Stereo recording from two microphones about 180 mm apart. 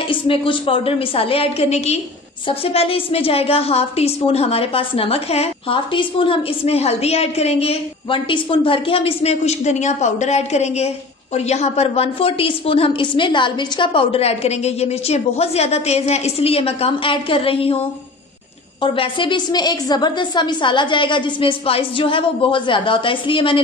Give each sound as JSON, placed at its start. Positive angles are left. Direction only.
{"t": 0.1, "sound": "a woman's voice", "side_deg": 30}
{"t": 18.8, "sound": "a woman's voice", "side_deg": 30}